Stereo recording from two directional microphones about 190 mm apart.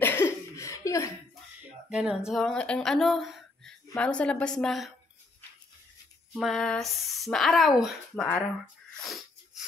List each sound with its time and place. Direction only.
0.0 s a sound: 10° left (ahead or behind)
1.6 s speech: 5° right (ahead or behind)
6.3 s speech: centre (ahead or behind)